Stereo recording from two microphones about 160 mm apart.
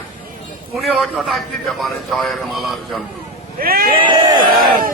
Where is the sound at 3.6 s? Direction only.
70° right (ahead or behind).